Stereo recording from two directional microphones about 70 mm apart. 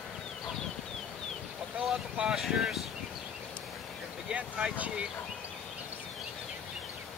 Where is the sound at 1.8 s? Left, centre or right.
Centre.